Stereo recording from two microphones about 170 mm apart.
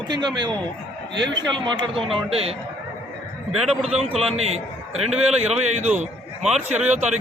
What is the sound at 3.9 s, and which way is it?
A man's voice, 40° right (ahead or behind).